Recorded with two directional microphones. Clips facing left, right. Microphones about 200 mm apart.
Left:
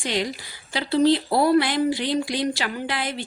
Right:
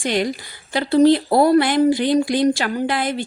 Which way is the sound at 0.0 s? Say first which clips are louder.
Right 5 dB; 50° right (ahead or behind).